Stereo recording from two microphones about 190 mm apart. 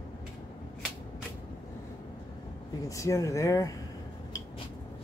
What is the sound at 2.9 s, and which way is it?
Speech, 15° left (ahead or behind).